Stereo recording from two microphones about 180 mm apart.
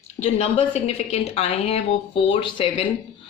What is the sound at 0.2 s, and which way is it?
A woman's voice, 35° left (ahead or behind).